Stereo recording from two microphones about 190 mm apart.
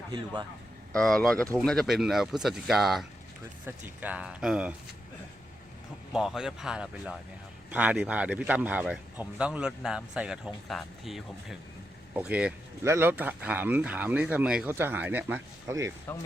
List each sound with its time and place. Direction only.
0.9 s speech: centre (ahead or behind)
6.1 s speech: centre (ahead or behind)
16.1 s speech: 10° left (ahead or behind)